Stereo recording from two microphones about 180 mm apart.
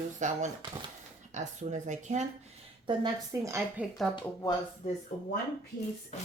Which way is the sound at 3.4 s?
15° right (ahead or behind).